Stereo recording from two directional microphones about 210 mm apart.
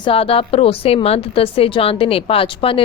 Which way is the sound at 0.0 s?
25° left (ahead or behind).